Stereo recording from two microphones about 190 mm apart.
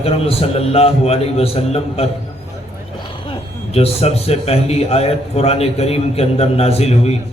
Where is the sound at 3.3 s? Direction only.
30° left (ahead or behind).